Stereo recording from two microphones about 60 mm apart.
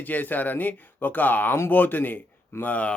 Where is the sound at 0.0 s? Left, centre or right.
Left.